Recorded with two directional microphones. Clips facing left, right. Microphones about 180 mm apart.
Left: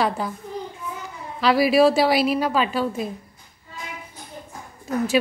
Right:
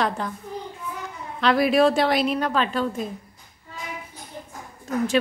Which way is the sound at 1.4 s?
5° left (ahead or behind).